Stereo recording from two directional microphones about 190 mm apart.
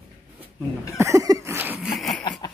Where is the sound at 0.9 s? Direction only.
15° right (ahead or behind).